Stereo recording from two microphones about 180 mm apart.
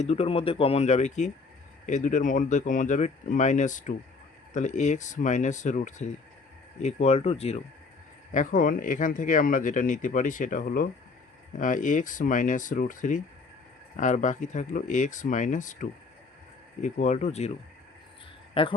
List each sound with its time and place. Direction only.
0.0 s speech: 35° left (ahead or behind)
8.3 s speech: 45° left (ahead or behind)
18.6 s speech: 30° left (ahead or behind)